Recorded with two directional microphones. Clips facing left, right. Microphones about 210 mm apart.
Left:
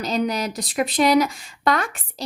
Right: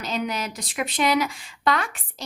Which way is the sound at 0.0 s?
35° left (ahead or behind).